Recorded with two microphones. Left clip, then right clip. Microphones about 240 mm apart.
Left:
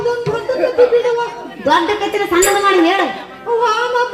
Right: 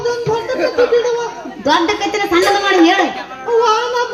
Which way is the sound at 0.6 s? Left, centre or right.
Right.